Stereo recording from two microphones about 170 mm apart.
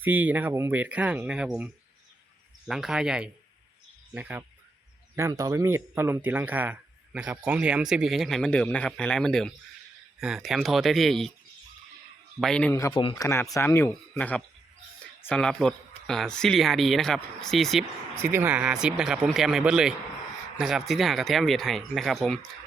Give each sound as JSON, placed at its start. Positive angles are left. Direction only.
{"t": 0.0, "sound": "a man's voice", "side_deg": -10}
{"t": 12.4, "sound": "a man's voice", "side_deg": 5}
{"t": 12.9, "sound": "speech", "side_deg": 30}
{"t": 13.2, "sound": "a man's voice", "side_deg": 20}
{"t": 18.2, "sound": "a man's voice", "side_deg": -15}